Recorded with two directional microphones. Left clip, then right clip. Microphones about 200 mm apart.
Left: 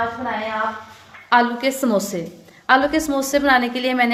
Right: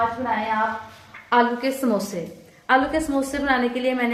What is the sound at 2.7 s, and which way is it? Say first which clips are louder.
A woman's voice: left 3 dB; 55° left (ahead or behind).